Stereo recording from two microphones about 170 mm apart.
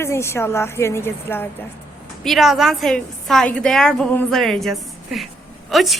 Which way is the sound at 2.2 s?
Centre (ahead or behind).